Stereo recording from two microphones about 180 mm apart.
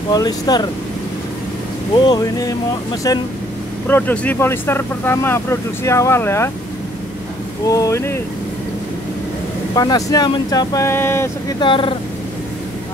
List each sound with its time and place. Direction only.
0.1 s speech: 20° left (ahead or behind)
2.0 s speech: 20° left (ahead or behind)
3.8 s speech: 10° left (ahead or behind)
7.6 s speech: 20° left (ahead or behind)
9.8 s speech: 20° left (ahead or behind)
11.6 s speech: 30° left (ahead or behind)